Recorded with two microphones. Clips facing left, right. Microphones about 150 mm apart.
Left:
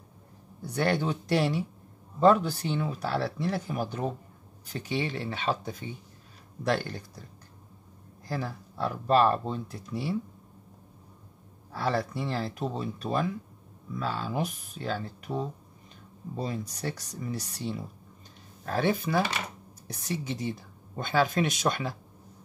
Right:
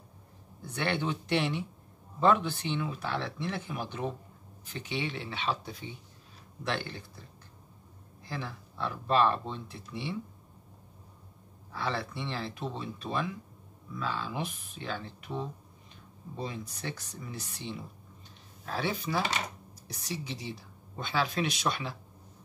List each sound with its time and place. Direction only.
0.7 s speech: 40° left (ahead or behind)
8.2 s speech: 40° left (ahead or behind)
11.7 s speech: 40° left (ahead or behind)